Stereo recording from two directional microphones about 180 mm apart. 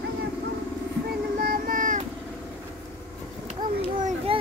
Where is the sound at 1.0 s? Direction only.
55° right (ahead or behind).